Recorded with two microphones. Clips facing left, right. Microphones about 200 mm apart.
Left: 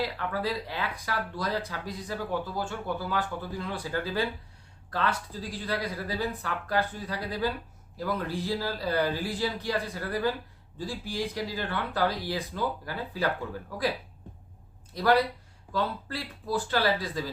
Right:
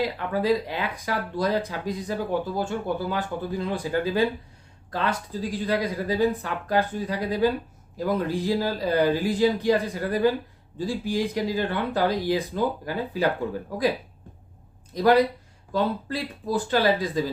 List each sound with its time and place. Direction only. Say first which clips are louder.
0.0 s speech: right 5 dB; 20° right (ahead or behind)
14.9 s speech: right 5 dB; 15° right (ahead or behind)